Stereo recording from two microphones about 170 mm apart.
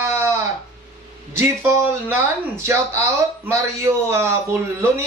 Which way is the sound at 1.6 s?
15° right (ahead or behind).